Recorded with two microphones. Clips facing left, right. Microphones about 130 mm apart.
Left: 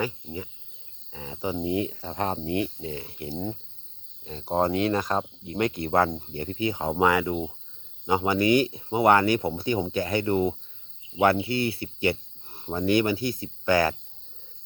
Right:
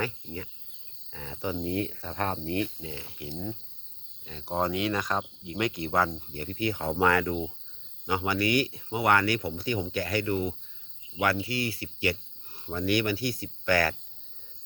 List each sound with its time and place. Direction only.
0.0 s speech: 15° left (ahead or behind)
2.8 s speech: 35° left (ahead or behind)
5.7 s speech: 55° left (ahead or behind)
6.1 s speech: 25° left (ahead or behind)